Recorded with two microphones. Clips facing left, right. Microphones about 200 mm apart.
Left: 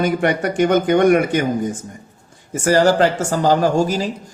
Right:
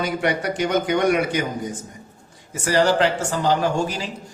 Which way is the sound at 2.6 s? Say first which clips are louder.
Left 4 dB; 45° left (ahead or behind).